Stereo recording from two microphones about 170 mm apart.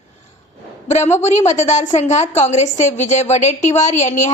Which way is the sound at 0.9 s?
40° left (ahead or behind).